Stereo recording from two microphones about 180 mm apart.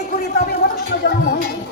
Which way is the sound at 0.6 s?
60° left (ahead or behind).